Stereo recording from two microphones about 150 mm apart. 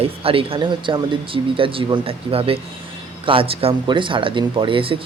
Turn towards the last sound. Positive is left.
turn(degrees=-35)  # may be behind; listen again after turning